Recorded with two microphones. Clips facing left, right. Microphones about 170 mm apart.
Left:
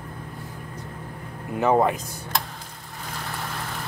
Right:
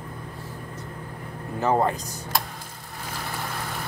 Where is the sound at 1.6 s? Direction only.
15° left (ahead or behind).